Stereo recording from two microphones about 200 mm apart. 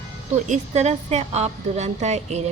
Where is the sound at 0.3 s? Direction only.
35° right (ahead or behind).